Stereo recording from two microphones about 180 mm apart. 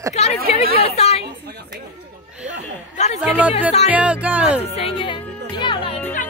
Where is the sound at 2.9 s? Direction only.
40° left (ahead or behind).